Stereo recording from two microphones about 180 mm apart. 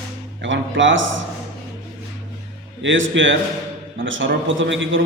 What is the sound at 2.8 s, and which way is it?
A man's voice, 90° right.